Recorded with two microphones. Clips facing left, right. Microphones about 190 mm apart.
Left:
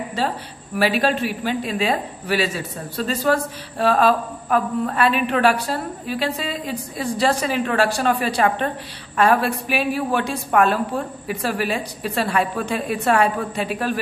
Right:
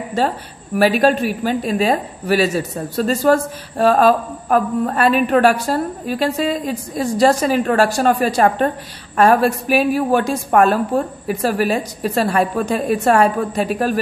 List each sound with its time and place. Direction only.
0.2 s speech: 45° right (ahead or behind)